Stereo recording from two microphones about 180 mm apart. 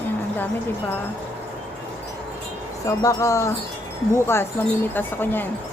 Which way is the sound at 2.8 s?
20° left (ahead or behind).